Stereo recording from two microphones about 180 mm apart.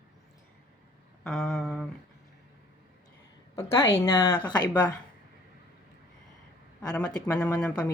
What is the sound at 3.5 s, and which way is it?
Speech, 15° left (ahead or behind).